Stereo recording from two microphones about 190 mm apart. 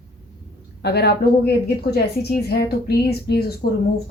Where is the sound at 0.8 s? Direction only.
60° left (ahead or behind).